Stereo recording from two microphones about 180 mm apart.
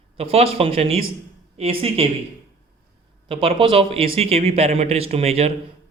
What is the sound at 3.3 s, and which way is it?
A man's voice, 30° right (ahead or behind).